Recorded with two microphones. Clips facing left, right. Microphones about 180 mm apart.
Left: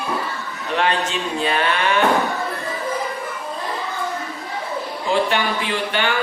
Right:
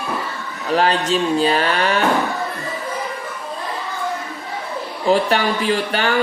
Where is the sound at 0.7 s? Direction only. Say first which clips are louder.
Right 4 dB; 35° right (ahead or behind).